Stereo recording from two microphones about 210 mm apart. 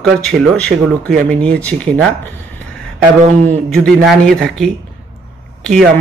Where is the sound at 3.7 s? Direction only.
Centre (ahead or behind).